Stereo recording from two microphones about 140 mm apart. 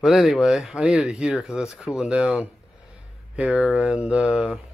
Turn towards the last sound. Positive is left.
turn(degrees=-10)  # may be behind; listen again after turning